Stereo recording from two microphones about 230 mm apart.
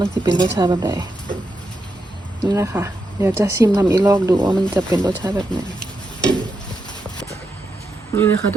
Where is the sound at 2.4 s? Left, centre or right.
Centre.